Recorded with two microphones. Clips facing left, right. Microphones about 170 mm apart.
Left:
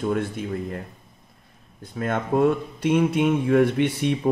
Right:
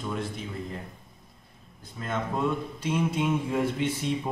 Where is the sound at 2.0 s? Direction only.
60° left (ahead or behind).